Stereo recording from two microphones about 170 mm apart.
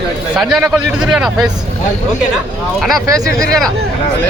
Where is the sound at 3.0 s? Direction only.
20° right (ahead or behind).